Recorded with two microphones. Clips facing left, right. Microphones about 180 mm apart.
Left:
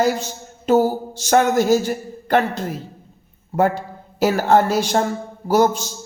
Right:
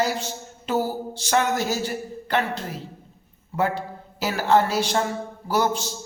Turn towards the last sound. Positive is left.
turn(degrees=45)  # may be behind; listen again after turning